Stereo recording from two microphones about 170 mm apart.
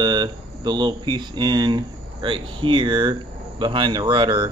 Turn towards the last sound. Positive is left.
turn(degrees=-30)  # may be behind; listen again after turning